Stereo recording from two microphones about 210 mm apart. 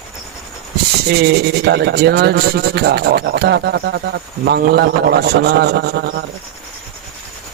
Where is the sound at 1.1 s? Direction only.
50° right (ahead or behind).